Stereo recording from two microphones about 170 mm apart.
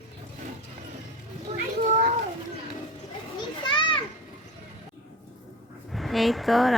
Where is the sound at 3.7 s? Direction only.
30° left (ahead or behind).